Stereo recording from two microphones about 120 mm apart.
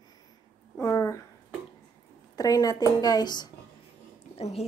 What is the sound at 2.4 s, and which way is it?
A woman's voice, 30° left (ahead or behind).